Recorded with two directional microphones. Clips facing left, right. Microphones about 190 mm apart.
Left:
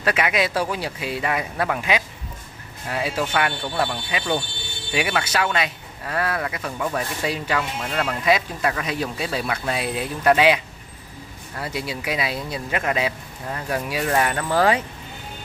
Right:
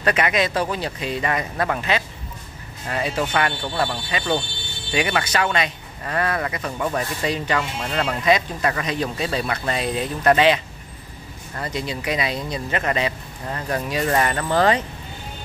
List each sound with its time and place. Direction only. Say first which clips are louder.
0.0 s speech: right 1 dB; 5° left (ahead or behind)